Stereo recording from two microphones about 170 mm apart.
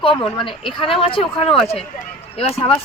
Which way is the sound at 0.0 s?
30° left (ahead or behind).